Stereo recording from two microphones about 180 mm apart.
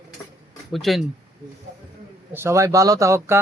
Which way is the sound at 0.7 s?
Centre (ahead or behind).